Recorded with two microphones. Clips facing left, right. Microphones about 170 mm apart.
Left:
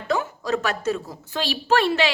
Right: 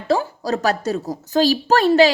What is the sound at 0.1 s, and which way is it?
A woman's voice, 35° right (ahead or behind).